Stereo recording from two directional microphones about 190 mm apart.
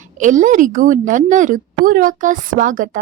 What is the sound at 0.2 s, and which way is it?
A woman's voice, 40° right (ahead or behind).